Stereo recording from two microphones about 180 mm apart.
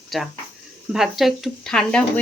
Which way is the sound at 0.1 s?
Centre (ahead or behind).